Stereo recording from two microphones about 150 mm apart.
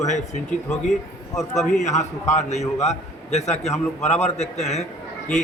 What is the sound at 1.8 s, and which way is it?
A man's voice, 50° left (ahead or behind).